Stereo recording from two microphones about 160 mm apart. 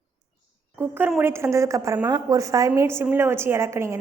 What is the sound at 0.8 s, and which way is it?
A woman's voice, 10° right (ahead or behind).